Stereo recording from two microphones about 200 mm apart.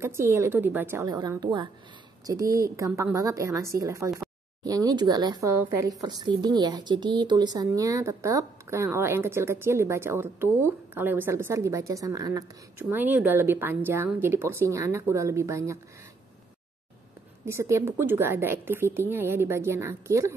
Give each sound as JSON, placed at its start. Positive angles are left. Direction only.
{"t": 0.0, "sound": "a woman's voice", "side_deg": -15}
{"t": 17.5, "sound": "a woman's voice", "side_deg": -15}